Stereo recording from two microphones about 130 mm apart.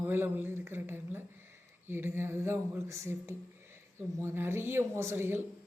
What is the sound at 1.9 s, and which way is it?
A man's voice, 15° right (ahead or behind).